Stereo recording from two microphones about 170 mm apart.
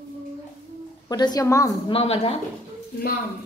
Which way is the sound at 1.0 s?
25° left (ahead or behind).